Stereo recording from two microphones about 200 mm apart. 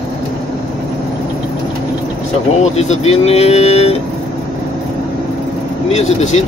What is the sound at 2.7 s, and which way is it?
Speech, 35° left (ahead or behind).